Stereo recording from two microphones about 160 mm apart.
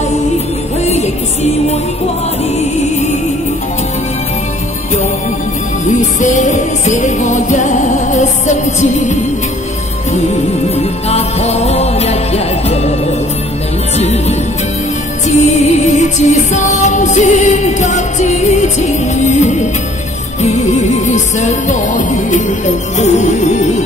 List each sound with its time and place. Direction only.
0.8 s music: 45° left (ahead or behind)
5.9 s music: 50° left (ahead or behind)
10.3 s music: 40° left (ahead or behind)
13.9 s music: 40° left (ahead or behind)
15.2 s music: 45° left (ahead or behind)